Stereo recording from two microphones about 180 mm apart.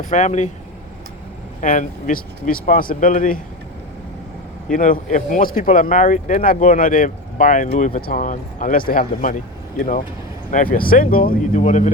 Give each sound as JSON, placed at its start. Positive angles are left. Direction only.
{"t": 0.0, "sound": "speech", "side_deg": 40}
{"t": 1.6, "sound": "speech", "side_deg": 45}
{"t": 4.7, "sound": "speech", "side_deg": 50}
{"t": 10.5, "sound": "speech", "side_deg": 50}